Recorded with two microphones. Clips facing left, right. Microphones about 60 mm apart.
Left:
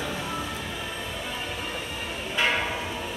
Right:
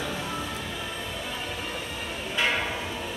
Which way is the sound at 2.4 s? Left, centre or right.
Left.